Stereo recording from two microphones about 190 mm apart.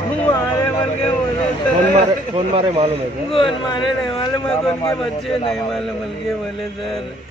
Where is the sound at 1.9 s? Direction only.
30° right (ahead or behind).